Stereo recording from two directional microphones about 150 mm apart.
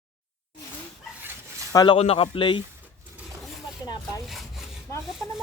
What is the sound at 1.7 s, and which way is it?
Speech, 30° left (ahead or behind).